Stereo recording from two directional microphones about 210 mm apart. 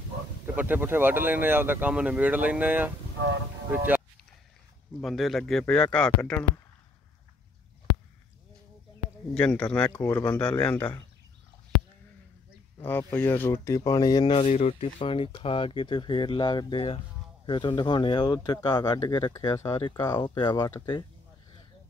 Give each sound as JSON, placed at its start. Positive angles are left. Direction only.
{"t": 0.6, "sound": "speech", "side_deg": -10}
{"t": 5.0, "sound": "speech", "side_deg": 0}
{"t": 9.3, "sound": "speech", "side_deg": 5}
{"t": 9.9, "sound": "speech", "side_deg": 15}
{"t": 12.7, "sound": "speech", "side_deg": 10}